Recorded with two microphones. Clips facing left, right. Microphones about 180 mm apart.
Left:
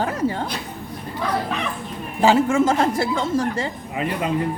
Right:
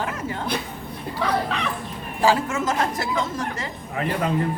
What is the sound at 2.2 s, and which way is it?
A woman's voice, 25° left (ahead or behind).